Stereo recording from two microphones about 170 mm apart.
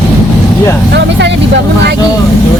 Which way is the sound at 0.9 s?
90° right.